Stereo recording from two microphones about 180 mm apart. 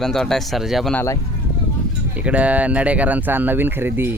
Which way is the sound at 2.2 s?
5° right (ahead or behind).